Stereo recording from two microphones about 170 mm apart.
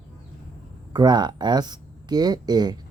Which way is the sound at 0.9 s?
25° right (ahead or behind).